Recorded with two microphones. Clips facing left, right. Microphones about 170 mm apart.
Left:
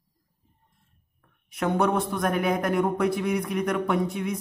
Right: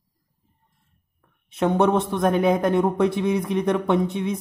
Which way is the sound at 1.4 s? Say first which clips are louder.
Right 4 dB; 25° right (ahead or behind).